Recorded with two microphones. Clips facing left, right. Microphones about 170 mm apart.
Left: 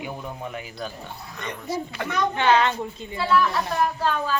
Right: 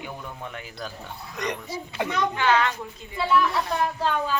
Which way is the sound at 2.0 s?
20° right (ahead or behind).